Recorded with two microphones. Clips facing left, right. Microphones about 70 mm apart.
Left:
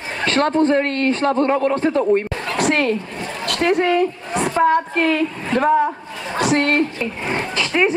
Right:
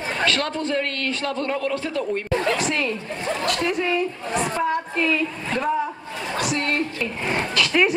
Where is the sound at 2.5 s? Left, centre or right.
Left.